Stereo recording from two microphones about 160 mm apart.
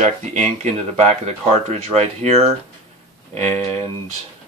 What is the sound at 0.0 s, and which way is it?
Speech, 45° right (ahead or behind).